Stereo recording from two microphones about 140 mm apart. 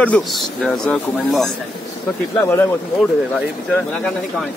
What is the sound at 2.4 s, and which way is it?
Speech, 15° left (ahead or behind).